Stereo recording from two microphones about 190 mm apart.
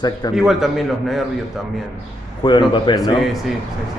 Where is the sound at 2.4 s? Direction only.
25° left (ahead or behind).